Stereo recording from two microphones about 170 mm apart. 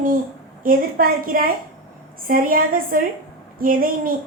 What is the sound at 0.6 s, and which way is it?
A woman's voice, 55° right (ahead or behind).